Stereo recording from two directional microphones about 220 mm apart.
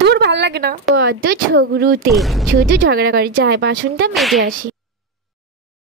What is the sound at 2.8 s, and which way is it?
Speech, 45° right (ahead or behind).